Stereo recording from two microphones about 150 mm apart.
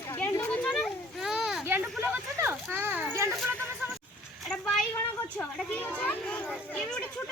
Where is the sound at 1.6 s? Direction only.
15° right (ahead or behind).